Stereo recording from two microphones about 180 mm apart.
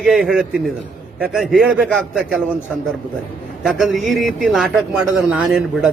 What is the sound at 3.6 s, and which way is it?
A man's voice, centre (ahead or behind).